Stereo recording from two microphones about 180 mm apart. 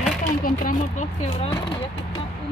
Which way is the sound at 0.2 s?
45° left (ahead or behind).